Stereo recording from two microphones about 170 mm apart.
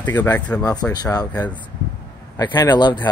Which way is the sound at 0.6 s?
20° left (ahead or behind).